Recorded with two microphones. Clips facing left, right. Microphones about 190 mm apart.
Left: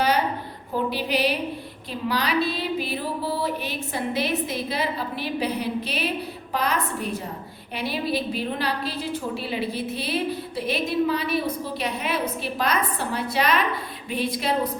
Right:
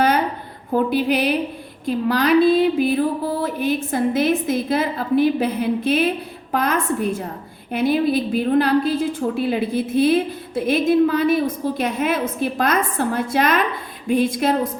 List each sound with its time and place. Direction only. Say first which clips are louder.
0.7 s a woman's voice: right 7 dB; 50° right (ahead or behind)